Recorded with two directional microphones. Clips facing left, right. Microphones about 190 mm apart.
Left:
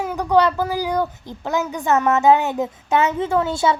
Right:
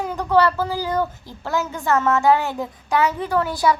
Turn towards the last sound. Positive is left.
turn(degrees=25)  # may be behind; listen again after turning